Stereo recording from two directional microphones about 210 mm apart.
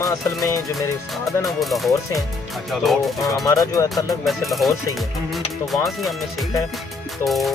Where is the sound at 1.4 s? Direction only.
Centre (ahead or behind).